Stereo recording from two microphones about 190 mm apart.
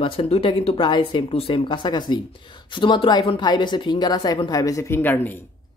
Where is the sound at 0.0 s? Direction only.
30° left (ahead or behind); by 5.5 s 10° left (ahead or behind).